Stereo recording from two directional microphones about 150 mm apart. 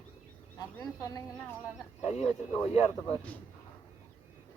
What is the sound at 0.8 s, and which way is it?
Speech, 25° left (ahead or behind).